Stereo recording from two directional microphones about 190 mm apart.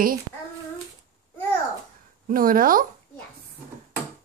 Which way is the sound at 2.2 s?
50° right (ahead or behind).